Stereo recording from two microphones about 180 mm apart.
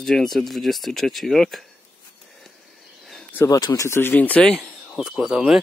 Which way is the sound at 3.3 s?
20° left (ahead or behind).